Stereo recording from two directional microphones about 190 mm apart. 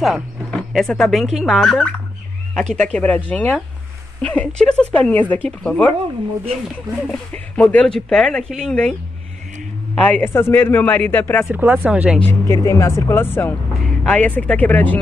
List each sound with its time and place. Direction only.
0.0 s a man's voice: centre (ahead or behind)
7.1 s speech: 5° left (ahead or behind)
9.9 s a man's voice: 5° left (ahead or behind)
11.4 s speech: 10° right (ahead or behind)
12.3 s a man's voice: 15° left (ahead or behind)